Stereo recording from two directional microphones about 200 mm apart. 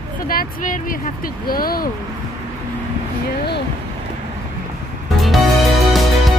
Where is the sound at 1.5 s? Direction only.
45° left (ahead or behind).